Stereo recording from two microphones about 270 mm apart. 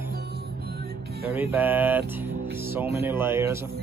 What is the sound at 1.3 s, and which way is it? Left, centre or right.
Speech, centre.